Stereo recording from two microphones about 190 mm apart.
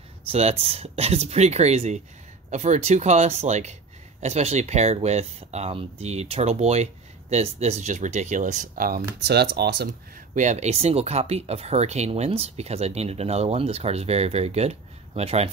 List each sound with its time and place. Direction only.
0.3 s speech: 35° right (ahead or behind); by 9.8 s 60° right (ahead or behind)
10.3 s speech: 40° right (ahead or behind)